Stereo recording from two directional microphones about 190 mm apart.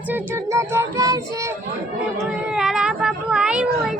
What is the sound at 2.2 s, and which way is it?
Speech, centre (ahead or behind).